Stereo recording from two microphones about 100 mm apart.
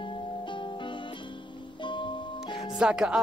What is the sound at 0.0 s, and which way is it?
Music, 55° left (ahead or behind).